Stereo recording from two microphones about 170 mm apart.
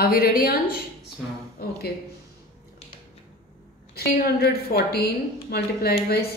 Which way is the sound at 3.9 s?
70° left (ahead or behind).